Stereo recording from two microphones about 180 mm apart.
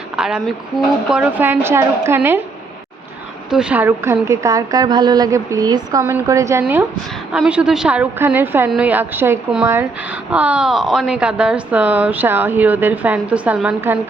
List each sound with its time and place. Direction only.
0.2 s a woman's voice: 5° right (ahead or behind)
3.5 s a woman's voice: 5° right (ahead or behind)